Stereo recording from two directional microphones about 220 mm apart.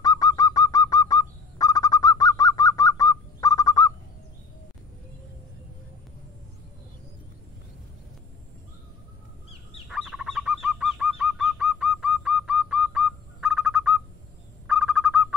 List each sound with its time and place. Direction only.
0.0 s bird: 15° left (ahead or behind)
9.8 s bird: centre (ahead or behind)
14.7 s owl: centre (ahead or behind)